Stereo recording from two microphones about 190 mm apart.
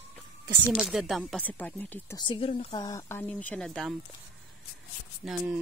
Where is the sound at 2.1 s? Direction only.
25° left (ahead or behind); by 3.9 s centre (ahead or behind).